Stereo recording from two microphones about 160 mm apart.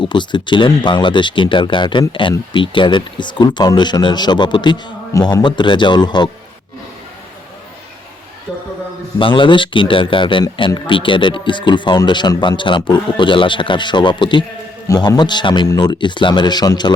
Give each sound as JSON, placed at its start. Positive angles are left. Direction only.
{"t": 0.0, "sound": "speech", "side_deg": 30}
{"t": 9.1, "sound": "speech", "side_deg": 30}